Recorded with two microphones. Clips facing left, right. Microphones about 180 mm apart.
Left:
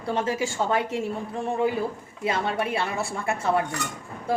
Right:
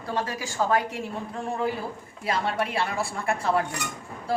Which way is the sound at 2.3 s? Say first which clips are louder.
Left 1 dB; 25° left (ahead or behind).